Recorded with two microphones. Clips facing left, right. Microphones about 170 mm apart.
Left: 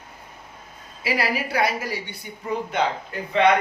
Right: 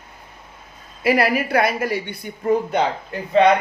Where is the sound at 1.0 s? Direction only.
55° right (ahead or behind).